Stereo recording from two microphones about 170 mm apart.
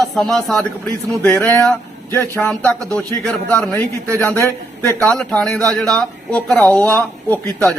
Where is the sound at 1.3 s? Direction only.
15° left (ahead or behind).